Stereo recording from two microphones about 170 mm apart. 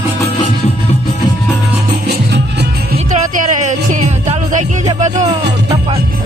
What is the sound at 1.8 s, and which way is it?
Music, 75° right (ahead or behind).